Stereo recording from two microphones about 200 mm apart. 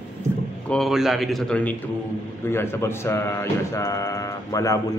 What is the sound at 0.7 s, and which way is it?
A man's voice, centre (ahead or behind).